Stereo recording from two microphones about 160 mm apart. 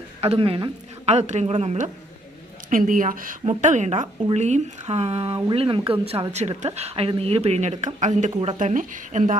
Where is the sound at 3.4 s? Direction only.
45° right (ahead or behind).